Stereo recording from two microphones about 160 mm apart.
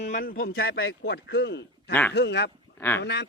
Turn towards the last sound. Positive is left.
turn(degrees=90)